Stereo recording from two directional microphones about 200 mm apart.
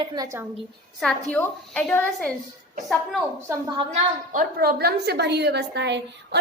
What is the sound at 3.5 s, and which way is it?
Speech, 20° right (ahead or behind).